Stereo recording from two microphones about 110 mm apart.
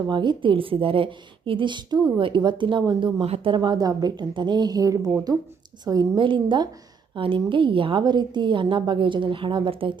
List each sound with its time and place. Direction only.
0.1 s a woman's voice: 45° right (ahead or behind)
3.2 s speech: 60° right (ahead or behind)
3.5 s a woman's voice: 40° right (ahead or behind)